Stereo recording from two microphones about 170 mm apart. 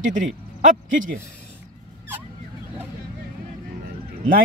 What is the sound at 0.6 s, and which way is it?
Speech, 50° right (ahead or behind).